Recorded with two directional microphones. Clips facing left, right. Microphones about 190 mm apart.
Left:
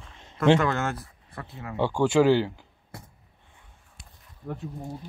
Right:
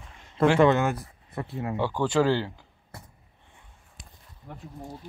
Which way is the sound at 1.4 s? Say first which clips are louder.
Right 7 dB; 30° right (ahead or behind).